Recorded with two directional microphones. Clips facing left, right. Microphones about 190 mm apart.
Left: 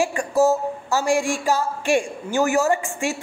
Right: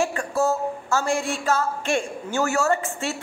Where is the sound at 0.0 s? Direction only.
15° left (ahead or behind).